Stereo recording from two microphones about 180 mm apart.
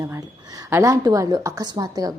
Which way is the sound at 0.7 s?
15° right (ahead or behind).